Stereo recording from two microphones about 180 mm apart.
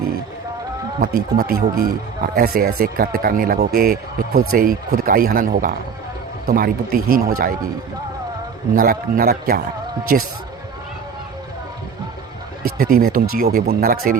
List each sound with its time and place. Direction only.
1.0 s speech: 50° right (ahead or behind)
8.7 s speech: 50° right (ahead or behind)
12.6 s speech: 55° right (ahead or behind)